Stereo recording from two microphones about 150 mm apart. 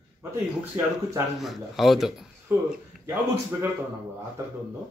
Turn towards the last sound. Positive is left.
turn(degrees=-15)  # may be behind; listen again after turning